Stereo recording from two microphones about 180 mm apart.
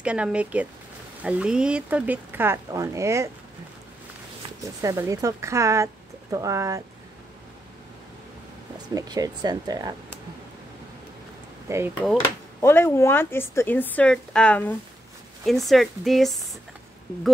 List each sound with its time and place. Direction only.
0.0 s speech: 5° right (ahead or behind)
4.8 s speech: 15° right (ahead or behind)
8.9 s speech: 20° right (ahead or behind)
11.7 s speech: 15° right (ahead or behind)
12.6 s speech: 15° left (ahead or behind)